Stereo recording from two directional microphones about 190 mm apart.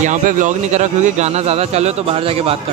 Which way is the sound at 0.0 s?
45° right (ahead or behind).